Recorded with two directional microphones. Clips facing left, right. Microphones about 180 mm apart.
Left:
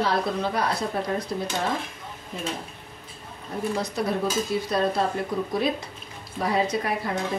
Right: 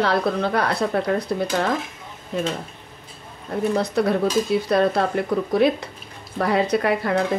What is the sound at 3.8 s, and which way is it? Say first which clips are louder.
A woman's voice: right 6 dB; 65° right (ahead or behind).